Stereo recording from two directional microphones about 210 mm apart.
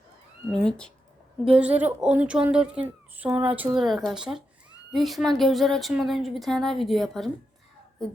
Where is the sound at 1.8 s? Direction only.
5° right (ahead or behind).